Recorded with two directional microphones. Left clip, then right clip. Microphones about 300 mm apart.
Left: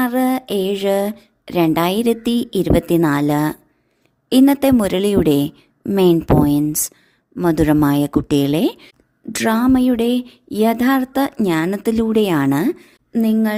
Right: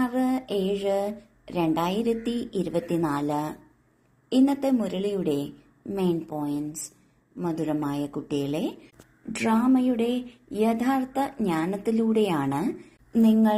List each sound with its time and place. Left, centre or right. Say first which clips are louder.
0.0 s speech: left 8 dB; left